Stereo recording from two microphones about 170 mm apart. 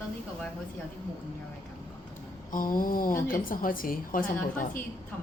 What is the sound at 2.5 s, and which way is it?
A woman's voice, 55° left (ahead or behind).